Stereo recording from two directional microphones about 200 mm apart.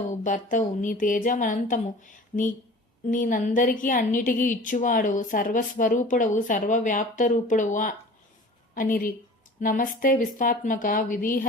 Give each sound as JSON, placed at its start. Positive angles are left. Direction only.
{"t": 0.1, "sound": "a woman's voice", "side_deg": 40}